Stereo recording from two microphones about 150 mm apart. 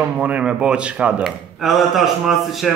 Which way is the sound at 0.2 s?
10° right (ahead or behind).